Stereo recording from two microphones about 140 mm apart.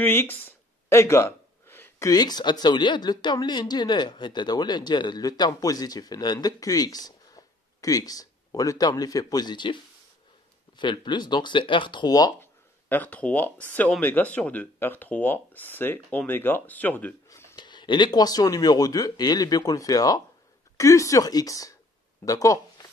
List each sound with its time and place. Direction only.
0.0 s speech: 15° left (ahead or behind); by 9.8 s 35° left (ahead or behind)
10.8 s speech: 35° left (ahead or behind)
12.4 s speech: 15° left (ahead or behind)
17.3 s a sound: 20° left (ahead or behind)
17.6 s speech: 35° left (ahead or behind)